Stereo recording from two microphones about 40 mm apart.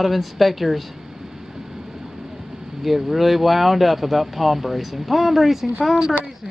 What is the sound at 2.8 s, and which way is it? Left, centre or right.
Speech, centre.